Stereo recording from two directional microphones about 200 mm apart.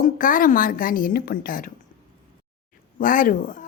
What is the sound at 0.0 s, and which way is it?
A woman's voice, 45° left (ahead or behind).